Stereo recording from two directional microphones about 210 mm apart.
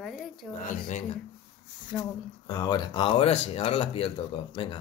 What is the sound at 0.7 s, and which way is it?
Speech, 40° left (ahead or behind).